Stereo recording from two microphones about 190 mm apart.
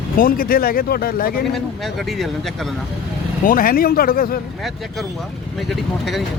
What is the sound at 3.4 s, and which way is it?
Speech, 50° left (ahead or behind).